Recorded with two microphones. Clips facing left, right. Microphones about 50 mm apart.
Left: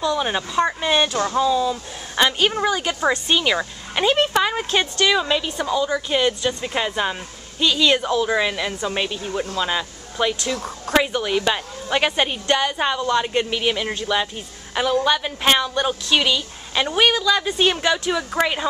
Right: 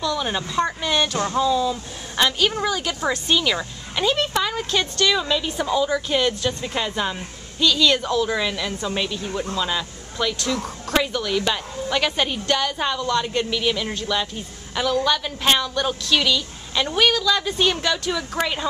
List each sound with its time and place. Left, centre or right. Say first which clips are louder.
0.0 s a woman's voice: left 3 dB; centre
5.4 s a woman's voice: even; centre